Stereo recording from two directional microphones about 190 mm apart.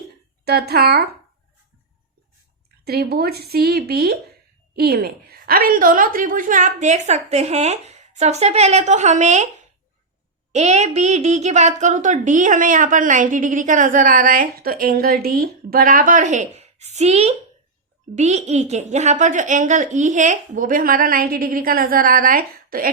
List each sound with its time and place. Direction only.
0.4 s speech: 55° right (ahead or behind)
2.8 s a woman's voice: 55° right (ahead or behind)